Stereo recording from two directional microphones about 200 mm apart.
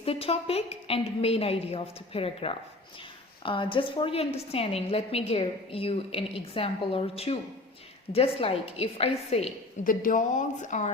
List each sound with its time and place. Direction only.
0.0 s a woman's voice: 30° left (ahead or behind)